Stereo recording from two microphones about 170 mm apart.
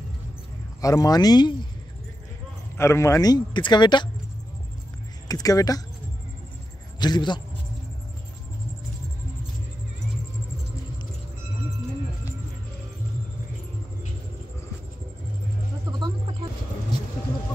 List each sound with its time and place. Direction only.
0.7 s speech: 20° left (ahead or behind)
2.8 s speech: 15° left (ahead or behind)
5.3 s speech: 20° left (ahead or behind)
7.0 s a man's voice: 25° left (ahead or behind)
15.8 s a sound: 25° right (ahead or behind)